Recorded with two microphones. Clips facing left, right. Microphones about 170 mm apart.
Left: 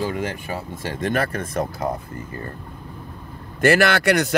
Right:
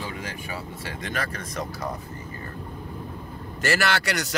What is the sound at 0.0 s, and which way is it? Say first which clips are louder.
Speech: left 9 dB; 50° left (ahead or behind).